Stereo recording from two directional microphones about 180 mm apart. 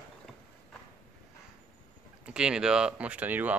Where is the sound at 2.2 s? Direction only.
5° right (ahead or behind).